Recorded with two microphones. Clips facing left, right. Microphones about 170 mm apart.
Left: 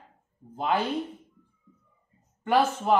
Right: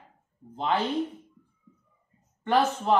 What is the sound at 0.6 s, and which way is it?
Speech, 5° left (ahead or behind).